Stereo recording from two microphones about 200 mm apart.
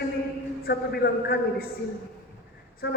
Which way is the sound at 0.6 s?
55° left (ahead or behind).